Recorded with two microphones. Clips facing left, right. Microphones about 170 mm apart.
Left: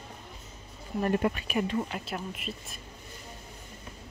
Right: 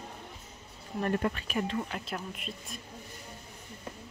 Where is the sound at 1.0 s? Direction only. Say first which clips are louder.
Left 3 dB; 10° left (ahead or behind).